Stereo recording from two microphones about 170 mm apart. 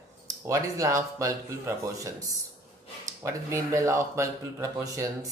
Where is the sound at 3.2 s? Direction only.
15° right (ahead or behind).